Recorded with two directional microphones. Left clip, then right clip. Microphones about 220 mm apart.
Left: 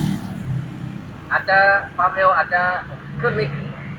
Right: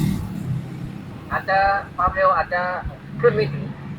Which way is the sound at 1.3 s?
60° left (ahead or behind).